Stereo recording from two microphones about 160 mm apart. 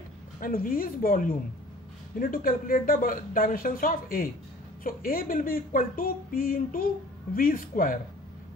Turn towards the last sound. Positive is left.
turn(degrees=60)  # may be behind; listen again after turning